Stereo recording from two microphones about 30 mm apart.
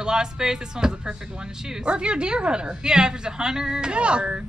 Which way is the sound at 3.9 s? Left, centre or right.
Right.